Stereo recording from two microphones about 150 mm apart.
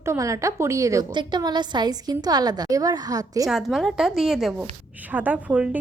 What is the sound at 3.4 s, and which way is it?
A woman's voice, centre (ahead or behind).